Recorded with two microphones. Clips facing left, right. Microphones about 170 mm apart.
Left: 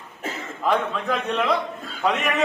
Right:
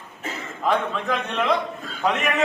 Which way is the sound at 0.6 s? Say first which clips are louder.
Even; centre (ahead or behind).